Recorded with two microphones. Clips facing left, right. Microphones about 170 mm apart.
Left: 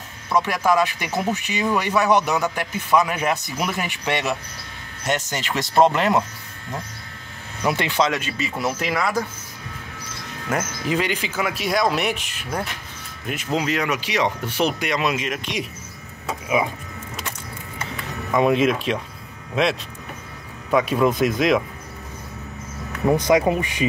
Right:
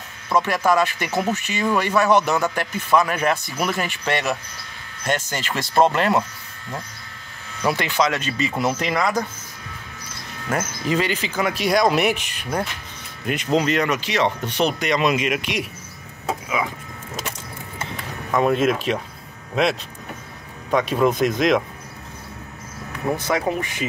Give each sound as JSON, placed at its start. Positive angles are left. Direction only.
{"t": 0.3, "sound": "a man's voice", "side_deg": 10}
{"t": 7.6, "sound": "speech", "side_deg": 25}
{"t": 8.1, "sound": "speech", "side_deg": 5}
{"t": 10.5, "sound": "speech", "side_deg": 15}
{"t": 18.3, "sound": "speech", "side_deg": 0}
{"t": 23.1, "sound": "a man's voice", "side_deg": 15}